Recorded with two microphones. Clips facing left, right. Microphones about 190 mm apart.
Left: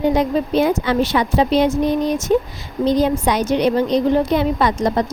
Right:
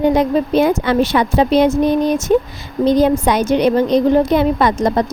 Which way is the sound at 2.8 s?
55° right (ahead or behind).